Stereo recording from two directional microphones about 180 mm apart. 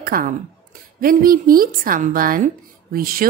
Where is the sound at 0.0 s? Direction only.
50° right (ahead or behind).